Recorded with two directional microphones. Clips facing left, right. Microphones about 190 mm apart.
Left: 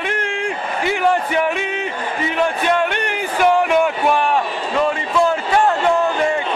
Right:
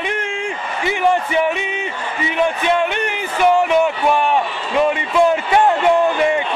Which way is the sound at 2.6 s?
Centre (ahead or behind).